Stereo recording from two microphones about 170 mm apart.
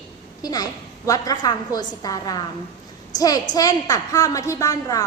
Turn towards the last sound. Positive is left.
turn(degrees=20)  # may be behind; listen again after turning